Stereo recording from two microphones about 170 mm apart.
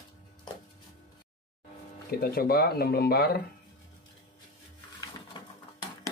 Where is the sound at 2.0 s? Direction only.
65° left (ahead or behind).